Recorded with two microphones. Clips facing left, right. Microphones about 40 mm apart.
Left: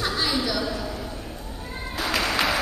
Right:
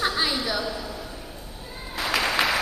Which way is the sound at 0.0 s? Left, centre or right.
Centre.